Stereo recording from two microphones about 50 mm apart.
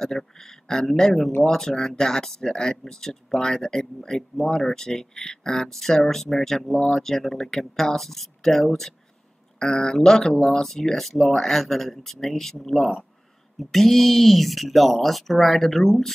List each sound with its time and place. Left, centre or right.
0.0 s speech: centre